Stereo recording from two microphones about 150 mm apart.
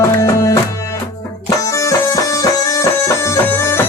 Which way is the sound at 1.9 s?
20° left (ahead or behind).